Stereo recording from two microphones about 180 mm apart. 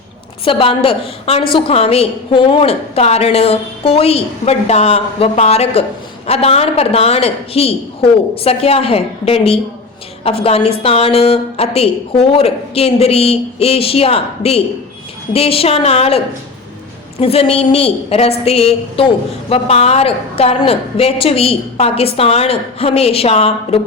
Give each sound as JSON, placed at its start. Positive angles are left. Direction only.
{"t": 0.4, "sound": "a woman's voice", "side_deg": 30}